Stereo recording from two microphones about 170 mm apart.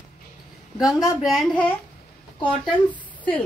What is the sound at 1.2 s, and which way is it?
A woman's voice, centre (ahead or behind).